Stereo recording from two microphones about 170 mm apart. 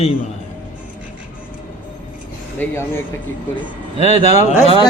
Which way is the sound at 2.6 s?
15° left (ahead or behind).